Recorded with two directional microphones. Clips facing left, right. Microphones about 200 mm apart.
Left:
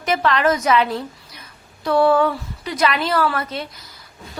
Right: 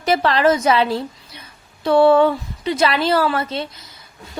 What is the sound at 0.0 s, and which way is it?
A woman's voice, 35° right (ahead or behind).